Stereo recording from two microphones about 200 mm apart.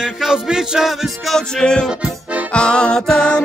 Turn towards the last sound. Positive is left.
turn(degrees=5)  # may be behind; listen again after turning